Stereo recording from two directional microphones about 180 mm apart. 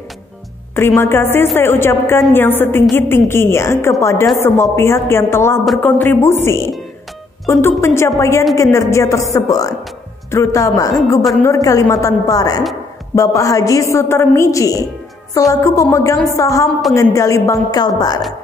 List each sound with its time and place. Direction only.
0.7 s a woman's voice: 15° left (ahead or behind)